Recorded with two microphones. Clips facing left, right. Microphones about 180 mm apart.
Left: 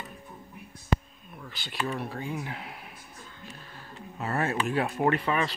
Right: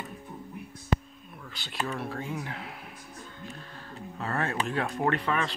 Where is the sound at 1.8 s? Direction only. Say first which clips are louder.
Left 1 dB; 5° left (ahead or behind).